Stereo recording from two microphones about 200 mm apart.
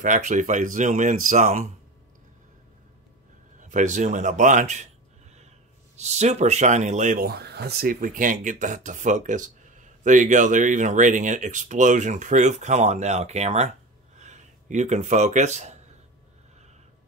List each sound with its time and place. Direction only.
0.0 s speech: 40° right (ahead or behind)
3.5 s speech: 40° right (ahead or behind)
5.9 s speech: 35° right (ahead or behind)